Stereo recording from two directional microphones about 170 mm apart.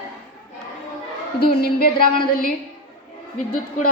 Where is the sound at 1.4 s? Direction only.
65° left (ahead or behind).